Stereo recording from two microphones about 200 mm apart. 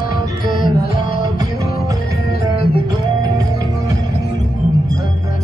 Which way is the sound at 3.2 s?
20° right (ahead or behind).